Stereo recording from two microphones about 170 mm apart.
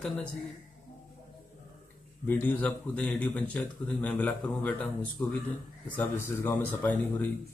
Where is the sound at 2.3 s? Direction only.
10° left (ahead or behind).